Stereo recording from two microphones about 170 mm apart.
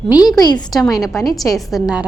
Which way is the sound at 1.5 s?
Centre (ahead or behind).